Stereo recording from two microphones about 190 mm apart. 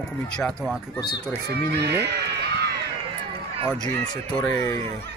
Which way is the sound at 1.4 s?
60° right (ahead or behind).